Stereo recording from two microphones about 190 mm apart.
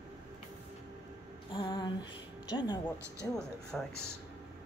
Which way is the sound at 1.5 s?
25° left (ahead or behind).